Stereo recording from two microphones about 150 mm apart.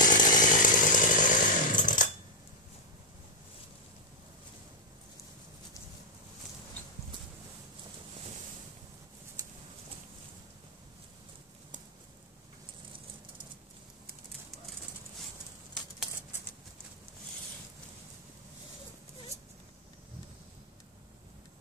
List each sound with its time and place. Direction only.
0.0 s chainsaw: 60° left (ahead or behind)